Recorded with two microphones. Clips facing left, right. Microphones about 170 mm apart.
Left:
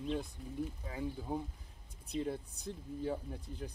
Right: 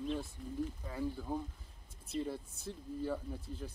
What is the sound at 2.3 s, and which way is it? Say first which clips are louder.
Speech: left 1 dB; 15° left (ahead or behind).